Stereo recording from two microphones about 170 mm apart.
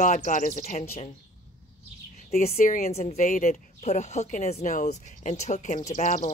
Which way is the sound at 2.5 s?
50° left (ahead or behind).